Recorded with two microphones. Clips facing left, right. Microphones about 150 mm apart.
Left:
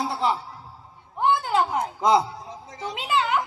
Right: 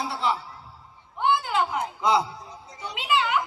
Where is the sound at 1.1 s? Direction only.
40° left (ahead or behind).